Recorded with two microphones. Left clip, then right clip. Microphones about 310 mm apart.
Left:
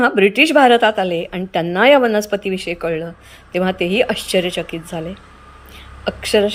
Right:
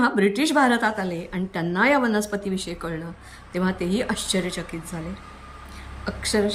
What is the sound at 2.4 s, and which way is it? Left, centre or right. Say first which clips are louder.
Speech: left 8 dB; right.